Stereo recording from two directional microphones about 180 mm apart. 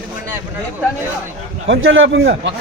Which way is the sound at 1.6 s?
90° right.